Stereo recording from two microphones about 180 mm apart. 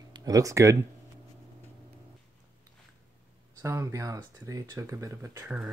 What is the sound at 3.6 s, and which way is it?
Speech, 15° right (ahead or behind).